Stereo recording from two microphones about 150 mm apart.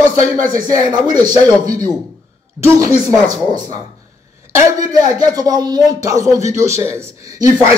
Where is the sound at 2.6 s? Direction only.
20° right (ahead or behind).